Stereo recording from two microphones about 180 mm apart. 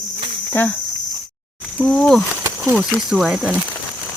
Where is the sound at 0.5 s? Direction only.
10° left (ahead or behind).